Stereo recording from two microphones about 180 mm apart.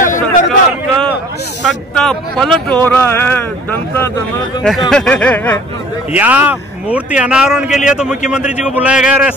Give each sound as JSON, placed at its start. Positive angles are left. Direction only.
{"t": 0.0, "sound": "a sound", "side_deg": 45}
{"t": 1.7, "sound": "speech", "side_deg": 5}
{"t": 4.6, "sound": "a man's voice", "side_deg": 0}
{"t": 6.1, "sound": "a man's voice", "side_deg": -10}